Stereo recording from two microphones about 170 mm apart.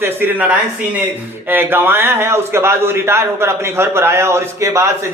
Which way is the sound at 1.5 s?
10° right (ahead or behind).